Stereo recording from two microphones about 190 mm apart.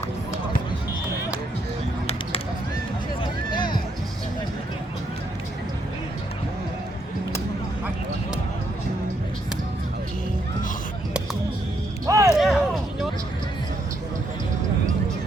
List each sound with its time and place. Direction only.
3.5 s music: 25° left (ahead or behind)
12.0 s music: 15° right (ahead or behind)
12.4 s a sound: centre (ahead or behind)